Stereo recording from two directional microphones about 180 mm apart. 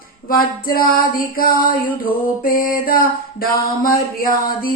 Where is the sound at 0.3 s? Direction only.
55° left (ahead or behind).